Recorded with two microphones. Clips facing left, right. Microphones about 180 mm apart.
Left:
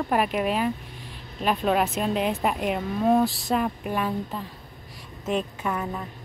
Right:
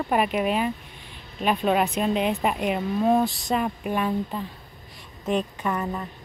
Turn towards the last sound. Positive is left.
turn(degrees=5)  # may be behind; listen again after turning